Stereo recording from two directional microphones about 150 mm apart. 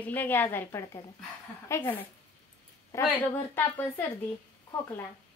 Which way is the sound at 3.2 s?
15° left (ahead or behind).